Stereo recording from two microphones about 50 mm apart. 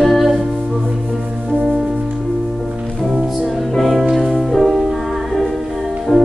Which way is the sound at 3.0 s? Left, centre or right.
Centre.